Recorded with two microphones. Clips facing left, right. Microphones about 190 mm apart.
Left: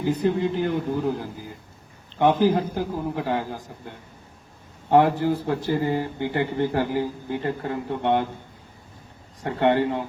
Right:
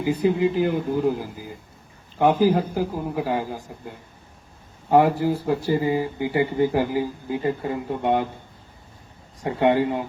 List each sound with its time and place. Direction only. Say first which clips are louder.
0.0 s speech: right 2 dB; 10° right (ahead or behind)
4.9 s speech: right 1 dB; 10° right (ahead or behind)
9.4 s speech: right 1 dB; 10° right (ahead or behind)